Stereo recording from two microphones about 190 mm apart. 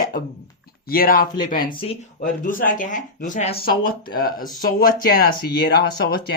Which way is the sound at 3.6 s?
50° left (ahead or behind).